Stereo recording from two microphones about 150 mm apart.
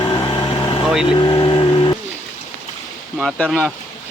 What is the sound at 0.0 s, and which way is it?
Vehicle, 30° left (ahead or behind).